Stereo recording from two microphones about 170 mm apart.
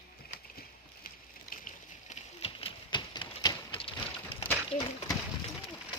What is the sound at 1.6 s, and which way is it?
Horse, 40° left (ahead or behind).